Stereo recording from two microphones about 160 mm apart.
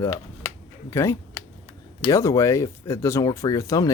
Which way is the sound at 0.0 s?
15° left (ahead or behind).